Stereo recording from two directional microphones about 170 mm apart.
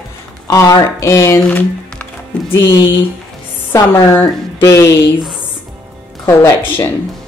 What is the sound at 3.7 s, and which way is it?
Speech, 15° left (ahead or behind).